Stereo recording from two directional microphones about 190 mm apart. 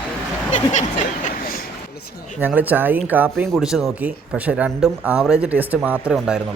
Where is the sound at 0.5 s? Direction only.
40° left (ahead or behind).